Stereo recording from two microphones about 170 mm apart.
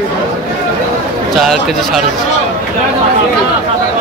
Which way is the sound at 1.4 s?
Centre (ahead or behind).